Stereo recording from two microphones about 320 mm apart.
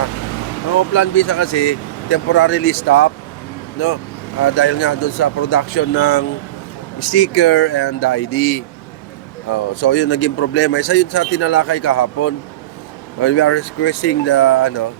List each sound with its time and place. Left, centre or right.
0.7 s speech: left
4.4 s speech: left
13.2 s speech: left